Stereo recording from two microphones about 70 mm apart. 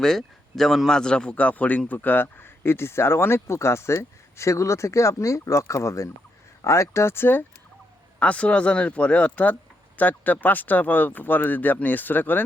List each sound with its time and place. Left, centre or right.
0.0 s a man's voice: centre; by 7.4 s left
8.2 s a man's voice: centre